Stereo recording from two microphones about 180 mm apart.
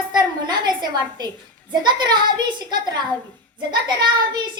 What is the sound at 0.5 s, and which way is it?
A child's voice, 25° right (ahead or behind).